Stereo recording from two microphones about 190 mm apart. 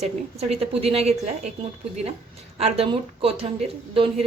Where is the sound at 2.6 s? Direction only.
30° right (ahead or behind).